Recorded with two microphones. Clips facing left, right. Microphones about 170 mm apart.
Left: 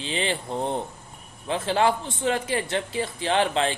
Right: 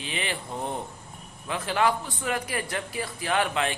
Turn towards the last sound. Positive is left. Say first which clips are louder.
# left 3 dB
turn(degrees=30)  # may be behind; listen again after turning